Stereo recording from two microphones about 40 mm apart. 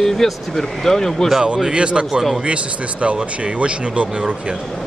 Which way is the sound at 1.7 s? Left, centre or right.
Right.